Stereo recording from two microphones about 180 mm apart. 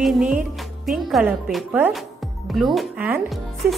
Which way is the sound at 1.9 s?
Centre (ahead or behind).